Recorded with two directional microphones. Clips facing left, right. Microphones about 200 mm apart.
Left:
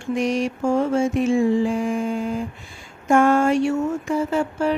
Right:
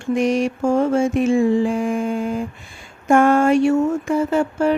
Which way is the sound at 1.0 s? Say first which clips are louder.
Right 2 dB; 55° right (ahead or behind).